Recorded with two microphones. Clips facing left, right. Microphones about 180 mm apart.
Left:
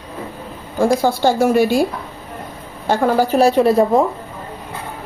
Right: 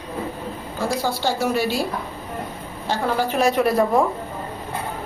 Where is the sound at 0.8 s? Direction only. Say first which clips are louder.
Left 9 dB; 50° left (ahead or behind).